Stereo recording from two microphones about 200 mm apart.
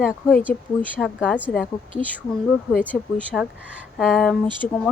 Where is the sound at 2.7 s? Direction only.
5° right (ahead or behind).